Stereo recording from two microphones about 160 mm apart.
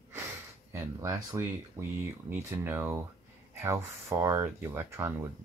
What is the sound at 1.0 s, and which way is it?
Speech, 15° right (ahead or behind).